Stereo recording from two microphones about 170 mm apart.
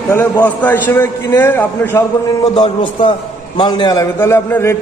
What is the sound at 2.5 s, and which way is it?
A man's voice, 30° left (ahead or behind).